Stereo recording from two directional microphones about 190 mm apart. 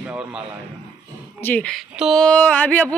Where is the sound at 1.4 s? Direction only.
10° left (ahead or behind).